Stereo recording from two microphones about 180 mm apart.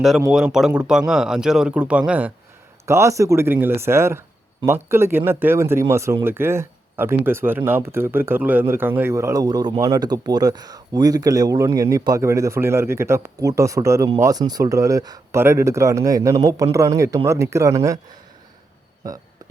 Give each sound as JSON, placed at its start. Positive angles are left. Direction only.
{"t": 0.3, "sound": "speech", "side_deg": 0}